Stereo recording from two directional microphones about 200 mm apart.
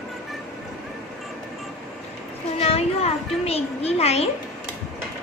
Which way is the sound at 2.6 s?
30° left (ahead or behind).